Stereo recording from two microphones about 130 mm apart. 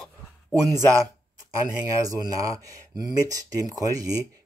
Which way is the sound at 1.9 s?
25° right (ahead or behind).